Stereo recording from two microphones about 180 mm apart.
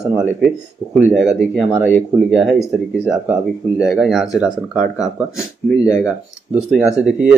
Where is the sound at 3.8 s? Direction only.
5° right (ahead or behind).